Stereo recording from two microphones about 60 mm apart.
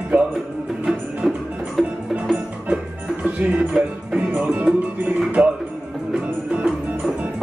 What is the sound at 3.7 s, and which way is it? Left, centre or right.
Music, centre.